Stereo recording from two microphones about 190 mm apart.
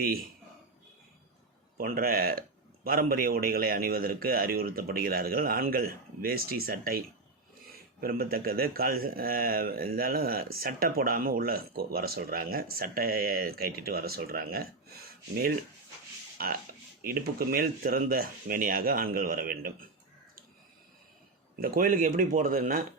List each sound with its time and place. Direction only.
0.0 s speech: 50° right (ahead or behind)
1.8 s speech: 50° right (ahead or behind)
21.6 s speech: 50° right (ahead or behind)